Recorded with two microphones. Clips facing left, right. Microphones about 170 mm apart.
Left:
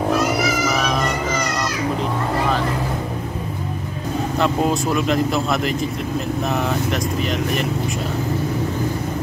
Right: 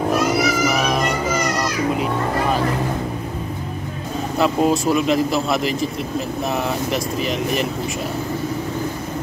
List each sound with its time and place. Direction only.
4.4 s speech: centre (ahead or behind)